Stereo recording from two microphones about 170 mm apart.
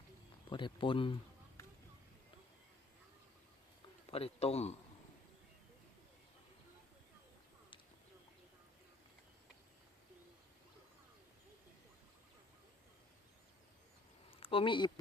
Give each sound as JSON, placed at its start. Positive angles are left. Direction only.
{"t": 0.5, "sound": "speech", "side_deg": 30}
{"t": 4.1, "sound": "a man's voice", "side_deg": 35}
{"t": 14.3, "sound": "a sound", "side_deg": 35}